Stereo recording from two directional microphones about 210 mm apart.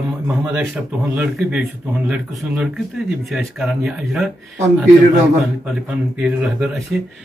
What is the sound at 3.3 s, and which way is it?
Speech, centre (ahead or behind).